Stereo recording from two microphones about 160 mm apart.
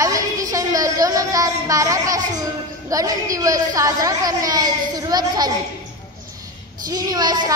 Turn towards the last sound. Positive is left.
turn(degrees=-25)  # may be behind; listen again after turning